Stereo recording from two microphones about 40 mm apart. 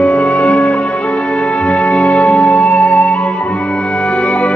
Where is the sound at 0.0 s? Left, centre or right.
Left.